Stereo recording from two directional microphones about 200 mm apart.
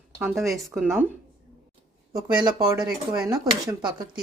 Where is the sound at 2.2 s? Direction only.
5° right (ahead or behind).